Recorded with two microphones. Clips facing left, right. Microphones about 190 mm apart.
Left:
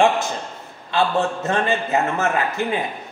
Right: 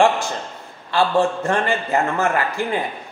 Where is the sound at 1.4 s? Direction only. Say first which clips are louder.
Even; 20° left (ahead or behind).